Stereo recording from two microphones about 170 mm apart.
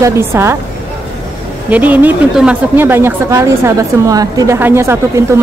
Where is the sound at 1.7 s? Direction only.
10° right (ahead or behind).